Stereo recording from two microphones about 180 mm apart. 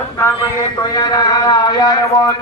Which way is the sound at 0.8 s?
20° left (ahead or behind).